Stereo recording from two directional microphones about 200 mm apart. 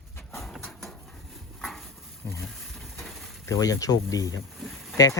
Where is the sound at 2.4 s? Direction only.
Centre (ahead or behind).